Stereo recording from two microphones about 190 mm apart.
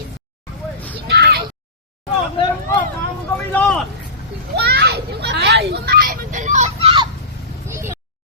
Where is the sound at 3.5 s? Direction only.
10° left (ahead or behind).